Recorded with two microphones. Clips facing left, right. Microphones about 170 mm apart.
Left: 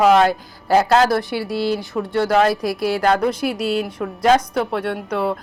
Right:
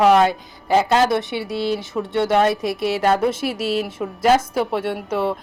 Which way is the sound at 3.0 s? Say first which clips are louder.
Even; 5° right (ahead or behind).